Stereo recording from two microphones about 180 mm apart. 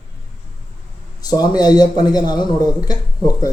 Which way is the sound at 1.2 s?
20° left (ahead or behind).